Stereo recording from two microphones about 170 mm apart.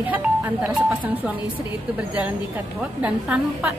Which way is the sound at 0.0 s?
10° right (ahead or behind).